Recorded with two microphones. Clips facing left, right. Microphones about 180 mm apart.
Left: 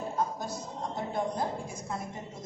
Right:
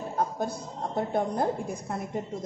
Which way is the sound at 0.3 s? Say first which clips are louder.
Right 5 dB; 55° right (ahead or behind).